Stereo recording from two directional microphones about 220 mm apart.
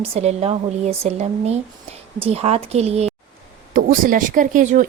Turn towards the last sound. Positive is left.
turn(degrees=-35)  # may be behind; listen again after turning